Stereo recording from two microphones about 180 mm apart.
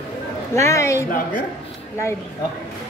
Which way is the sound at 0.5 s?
15° left (ahead or behind).